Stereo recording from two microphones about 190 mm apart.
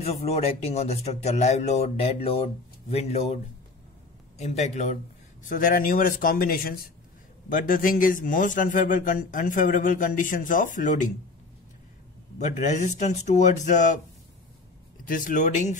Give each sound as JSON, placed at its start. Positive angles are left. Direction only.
{"t": 0.0, "sound": "speech", "side_deg": 35}
{"t": 4.4, "sound": "speech", "side_deg": 35}
{"t": 5.5, "sound": "a man's voice", "side_deg": 45}
{"t": 12.4, "sound": "speech", "side_deg": 40}
{"t": 15.0, "sound": "speech", "side_deg": 45}